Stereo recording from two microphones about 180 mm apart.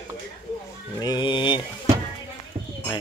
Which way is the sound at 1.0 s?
25° left (ahead or behind).